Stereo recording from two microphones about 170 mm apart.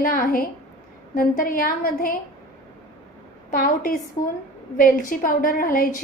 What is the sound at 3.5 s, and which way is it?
A woman's voice, 55° left (ahead or behind).